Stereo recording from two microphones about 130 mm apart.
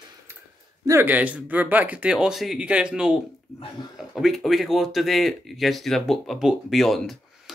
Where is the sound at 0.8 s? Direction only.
15° right (ahead or behind).